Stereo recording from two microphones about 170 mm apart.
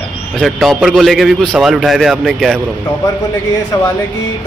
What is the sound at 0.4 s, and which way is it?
A man's voice, centre (ahead or behind).